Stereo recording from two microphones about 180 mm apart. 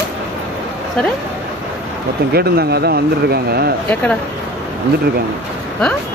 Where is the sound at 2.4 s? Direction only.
60° right (ahead or behind).